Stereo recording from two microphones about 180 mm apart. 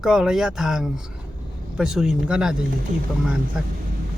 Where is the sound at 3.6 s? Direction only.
Centre (ahead or behind).